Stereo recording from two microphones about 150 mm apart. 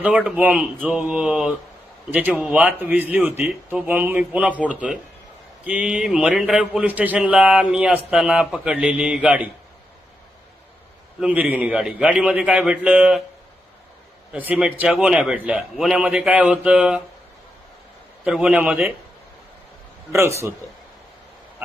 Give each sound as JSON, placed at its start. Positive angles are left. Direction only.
{"t": 0.0, "sound": "a man's voice", "side_deg": -10}
{"t": 11.2, "sound": "a man's voice", "side_deg": -10}
{"t": 14.3, "sound": "a man's voice", "side_deg": -10}
{"t": 18.3, "sound": "a man's voice", "side_deg": -5}
{"t": 20.1, "sound": "a man's voice", "side_deg": -20}